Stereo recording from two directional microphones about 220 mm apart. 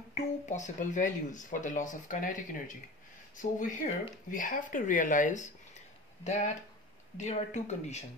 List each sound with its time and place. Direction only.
0.1 s speech: 35° left (ahead or behind)